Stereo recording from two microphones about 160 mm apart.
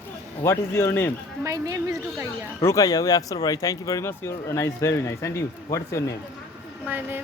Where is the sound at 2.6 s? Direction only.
20° left (ahead or behind).